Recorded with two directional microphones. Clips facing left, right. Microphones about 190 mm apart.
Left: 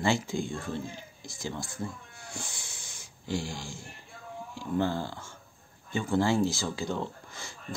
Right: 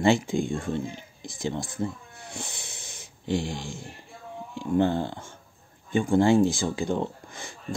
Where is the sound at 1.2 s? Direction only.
20° right (ahead or behind).